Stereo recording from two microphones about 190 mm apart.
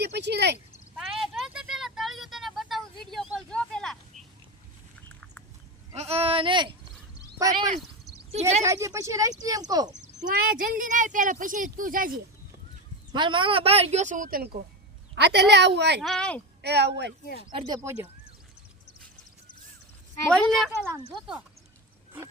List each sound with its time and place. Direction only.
0.0 s a woman's voice: 65° right (ahead or behind)
0.9 s vehicle: centre (ahead or behind)
5.9 s speech: 35° right (ahead or behind); by 7.7 s 20° right (ahead or behind)
8.3 s speech: 35° right (ahead or behind)
8.6 s speech: 15° right (ahead or behind)
10.7 s speech: 45° right (ahead or behind)
13.1 s speech: 25° right (ahead or behind); by 14.4 s 45° right (ahead or behind)
15.1 s a woman's voice: 65° right (ahead or behind)
16.0 s speech: centre (ahead or behind)
16.6 s a woman's voice: 60° right (ahead or behind)
17.5 s speech: 25° right (ahead or behind)
20.3 s speech: centre (ahead or behind)
20.7 s speech: 15° right (ahead or behind)